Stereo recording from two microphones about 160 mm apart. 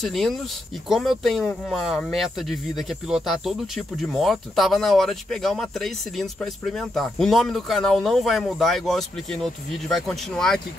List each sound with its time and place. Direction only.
0.0 s speech: centre (ahead or behind)